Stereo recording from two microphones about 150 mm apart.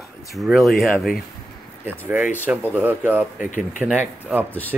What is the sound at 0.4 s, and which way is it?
Speech, centre (ahead or behind).